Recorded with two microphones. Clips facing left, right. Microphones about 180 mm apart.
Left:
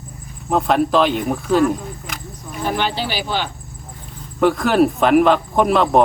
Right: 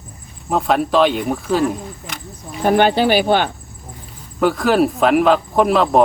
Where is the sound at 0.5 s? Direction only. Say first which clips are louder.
Even; centre (ahead or behind).